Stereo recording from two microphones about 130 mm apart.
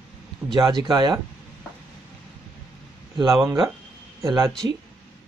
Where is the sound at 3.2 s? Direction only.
25° right (ahead or behind).